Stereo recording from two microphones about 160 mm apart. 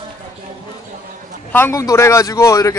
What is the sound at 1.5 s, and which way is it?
A man's voice, 15° left (ahead or behind).